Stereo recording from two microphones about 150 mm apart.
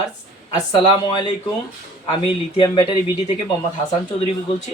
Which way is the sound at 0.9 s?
30° left (ahead or behind).